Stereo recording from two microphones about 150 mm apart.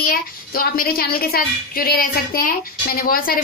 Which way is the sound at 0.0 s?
80° left.